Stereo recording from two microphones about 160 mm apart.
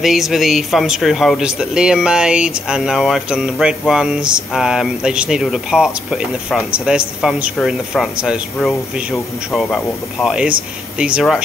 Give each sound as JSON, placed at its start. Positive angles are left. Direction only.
{"t": 0.0, "sound": "speech", "side_deg": 0}